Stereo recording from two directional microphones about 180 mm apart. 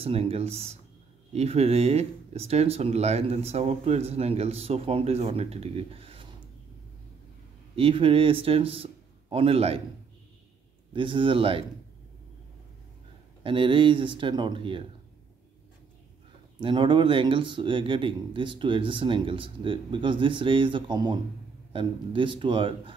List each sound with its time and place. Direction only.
0.0 s speech: 30° right (ahead or behind)
7.7 s a man's voice: 30° right (ahead or behind)
10.9 s speech: 30° right (ahead or behind)
13.4 s speech: 30° right (ahead or behind)
16.5 s speech: 25° right (ahead or behind)